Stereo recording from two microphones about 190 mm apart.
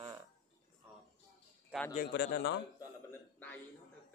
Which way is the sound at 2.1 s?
65° left (ahead or behind).